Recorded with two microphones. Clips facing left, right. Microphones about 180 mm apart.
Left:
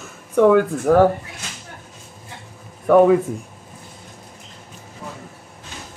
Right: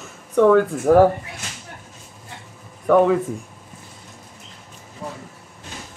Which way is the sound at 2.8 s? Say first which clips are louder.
Left 3 dB; 10° left (ahead or behind).